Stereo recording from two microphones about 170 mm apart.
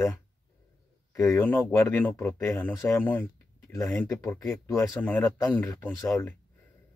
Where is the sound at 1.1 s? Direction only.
15° left (ahead or behind).